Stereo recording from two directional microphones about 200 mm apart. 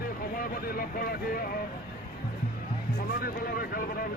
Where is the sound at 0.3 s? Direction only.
45° left (ahead or behind).